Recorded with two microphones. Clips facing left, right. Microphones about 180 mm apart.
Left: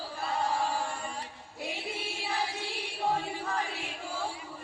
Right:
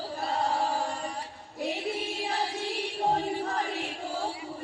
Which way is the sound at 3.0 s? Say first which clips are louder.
Right 3 dB; 40° right (ahead or behind).